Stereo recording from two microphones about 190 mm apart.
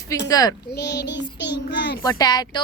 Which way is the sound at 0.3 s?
20° left (ahead or behind).